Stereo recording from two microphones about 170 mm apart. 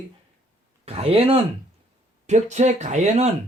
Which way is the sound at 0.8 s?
35° right (ahead or behind).